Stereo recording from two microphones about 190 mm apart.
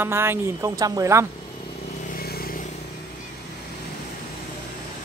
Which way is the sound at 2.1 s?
55° left (ahead or behind).